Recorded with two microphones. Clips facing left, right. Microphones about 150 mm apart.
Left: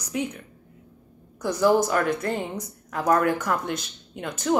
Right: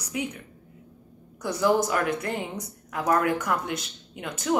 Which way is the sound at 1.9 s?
10° right (ahead or behind).